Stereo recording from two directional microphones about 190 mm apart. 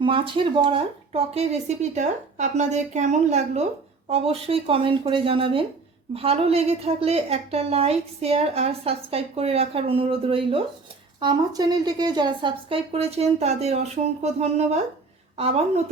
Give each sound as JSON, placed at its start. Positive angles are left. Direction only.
{"t": 0.0, "sound": "a woman's voice", "side_deg": -25}